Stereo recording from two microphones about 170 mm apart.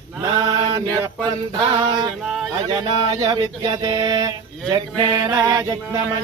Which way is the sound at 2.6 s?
25° right (ahead or behind).